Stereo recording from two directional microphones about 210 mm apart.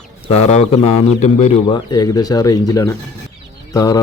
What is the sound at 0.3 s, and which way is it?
A man's voice, 30° left (ahead or behind).